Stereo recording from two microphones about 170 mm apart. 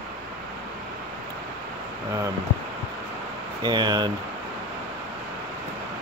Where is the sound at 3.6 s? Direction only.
25° right (ahead or behind).